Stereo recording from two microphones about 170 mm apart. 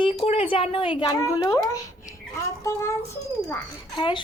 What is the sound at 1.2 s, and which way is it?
Speech, 15° left (ahead or behind).